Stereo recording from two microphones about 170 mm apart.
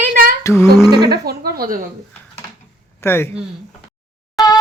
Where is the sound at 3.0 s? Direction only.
15° left (ahead or behind).